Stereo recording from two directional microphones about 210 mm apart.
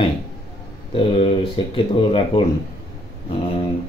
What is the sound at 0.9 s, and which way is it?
Speech, 25° left (ahead or behind).